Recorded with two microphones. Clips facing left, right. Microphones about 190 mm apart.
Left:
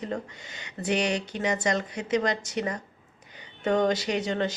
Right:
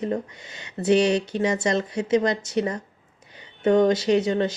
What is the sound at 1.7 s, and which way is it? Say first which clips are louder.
Speech: right 5 dB; 25° right (ahead or behind).